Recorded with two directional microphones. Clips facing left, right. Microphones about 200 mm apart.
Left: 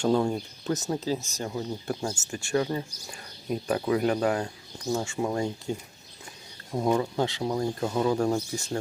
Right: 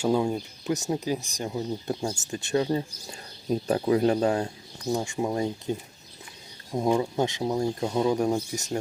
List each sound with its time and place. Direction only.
0.0 s speech: 10° right (ahead or behind)